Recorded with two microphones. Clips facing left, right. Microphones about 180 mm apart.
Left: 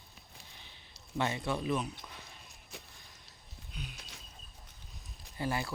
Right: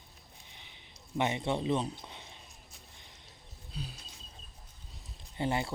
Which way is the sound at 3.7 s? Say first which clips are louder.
Right 3 dB; 35° right (ahead or behind).